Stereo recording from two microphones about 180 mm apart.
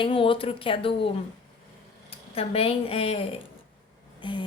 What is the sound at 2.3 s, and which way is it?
A woman's voice, 35° left (ahead or behind).